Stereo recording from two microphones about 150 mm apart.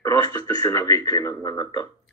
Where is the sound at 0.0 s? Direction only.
20° left (ahead or behind).